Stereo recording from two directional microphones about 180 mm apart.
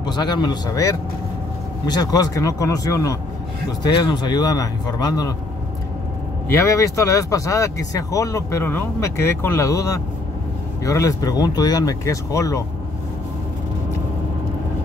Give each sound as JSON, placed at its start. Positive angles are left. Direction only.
{"t": 0.0, "sound": "speech", "side_deg": 25}
{"t": 6.5, "sound": "speech", "side_deg": 15}